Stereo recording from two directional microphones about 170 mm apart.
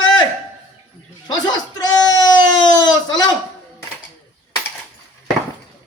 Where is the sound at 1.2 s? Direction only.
25° left (ahead or behind).